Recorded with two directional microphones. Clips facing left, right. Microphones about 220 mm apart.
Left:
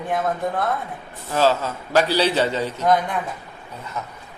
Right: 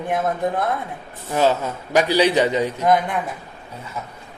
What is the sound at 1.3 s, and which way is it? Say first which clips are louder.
A man's voice: right 1 dB; 15° right (ahead or behind).